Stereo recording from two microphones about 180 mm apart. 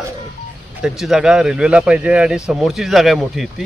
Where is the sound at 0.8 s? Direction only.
5° right (ahead or behind).